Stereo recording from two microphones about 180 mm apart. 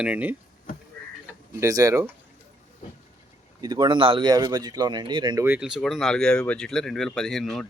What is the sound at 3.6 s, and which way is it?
Speech, 20° right (ahead or behind).